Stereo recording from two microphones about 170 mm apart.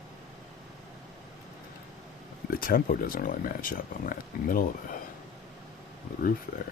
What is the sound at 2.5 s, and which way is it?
Speech, 60° left (ahead or behind).